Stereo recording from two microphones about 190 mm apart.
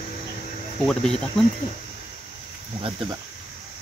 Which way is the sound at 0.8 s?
5° left (ahead or behind).